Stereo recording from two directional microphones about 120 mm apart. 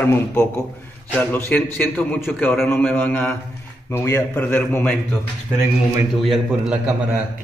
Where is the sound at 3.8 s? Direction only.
20° left (ahead or behind).